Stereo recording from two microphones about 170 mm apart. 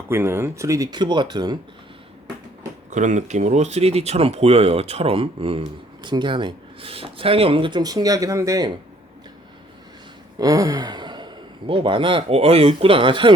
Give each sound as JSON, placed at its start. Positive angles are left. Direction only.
{"t": 0.1, "sound": "speech", "side_deg": -15}
{"t": 2.9, "sound": "speech", "side_deg": -45}
{"t": 10.3, "sound": "a man's voice", "side_deg": -20}